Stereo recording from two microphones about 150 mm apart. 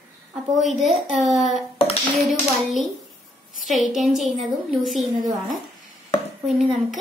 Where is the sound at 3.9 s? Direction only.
Centre (ahead or behind).